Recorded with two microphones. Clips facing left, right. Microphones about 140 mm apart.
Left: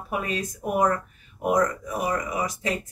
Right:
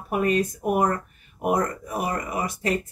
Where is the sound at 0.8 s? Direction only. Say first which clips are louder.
Left 1 dB; 40° right (ahead or behind).